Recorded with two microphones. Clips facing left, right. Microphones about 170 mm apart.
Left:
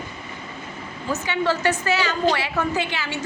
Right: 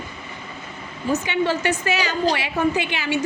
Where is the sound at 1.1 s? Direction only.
15° right (ahead or behind).